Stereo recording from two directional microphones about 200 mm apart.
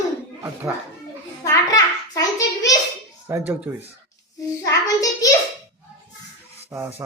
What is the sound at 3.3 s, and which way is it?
Speech, 10° right (ahead or behind).